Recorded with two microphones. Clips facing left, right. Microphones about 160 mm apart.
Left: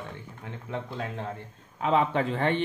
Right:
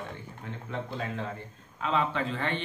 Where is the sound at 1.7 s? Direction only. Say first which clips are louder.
Left 4 dB; 55° left (ahead or behind).